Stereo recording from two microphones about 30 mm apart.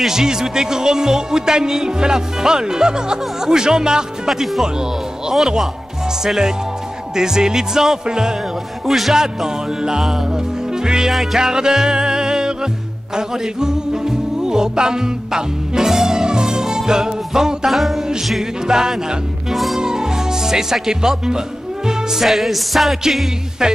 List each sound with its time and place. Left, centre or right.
0.1 s speech: centre
6.2 s speech: centre
8.8 s music: centre
9.1 s speech: centre
11.3 s music: right
17.6 s music: centre
18.7 s speech: right
19.5 s music: centre
19.8 s music: right
20.7 s speech: centre
22.2 s music: centre
23.6 s speech: centre